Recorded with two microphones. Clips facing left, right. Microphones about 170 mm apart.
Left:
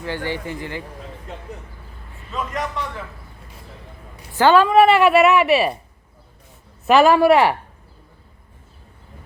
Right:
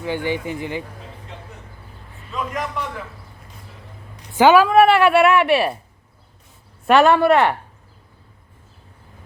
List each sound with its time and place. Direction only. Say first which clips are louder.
0.0 s speech: right 3 dB; 15° right (ahead or behind)
2.3 s a woman's voice: even; centre (ahead or behind)
4.4 s a woman's voice: right 1 dB; 10° right (ahead or behind)
6.8 s a woman's voice: left 1 dB; 5° left (ahead or behind)